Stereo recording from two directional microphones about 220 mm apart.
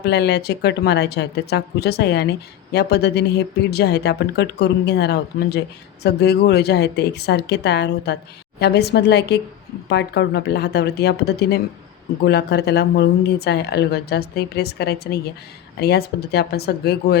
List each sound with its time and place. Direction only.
0.0 s speech: 50° left (ahead or behind)